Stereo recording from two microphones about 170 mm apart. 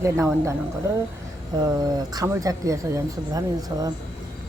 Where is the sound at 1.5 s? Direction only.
25° right (ahead or behind).